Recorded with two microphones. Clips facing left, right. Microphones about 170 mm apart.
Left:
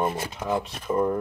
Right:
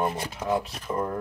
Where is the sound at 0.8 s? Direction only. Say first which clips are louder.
Left 8 dB; 10° left (ahead or behind).